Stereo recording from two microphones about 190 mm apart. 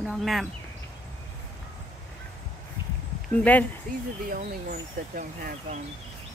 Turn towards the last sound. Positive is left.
turn(degrees=-45)  # may be behind; listen again after turning